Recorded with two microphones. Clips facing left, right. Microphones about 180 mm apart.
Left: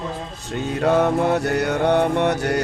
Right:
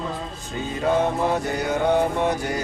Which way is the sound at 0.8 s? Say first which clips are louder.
Left 3 dB; 70° left (ahead or behind).